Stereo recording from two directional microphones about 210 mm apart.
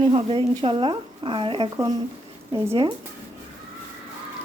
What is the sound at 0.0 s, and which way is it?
Speech, 25° right (ahead or behind).